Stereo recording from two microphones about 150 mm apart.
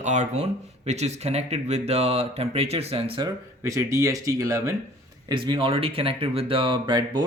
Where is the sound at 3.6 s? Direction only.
20° right (ahead or behind).